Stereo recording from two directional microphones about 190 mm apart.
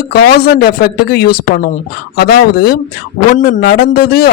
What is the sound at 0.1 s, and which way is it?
Speech, 55° left (ahead or behind).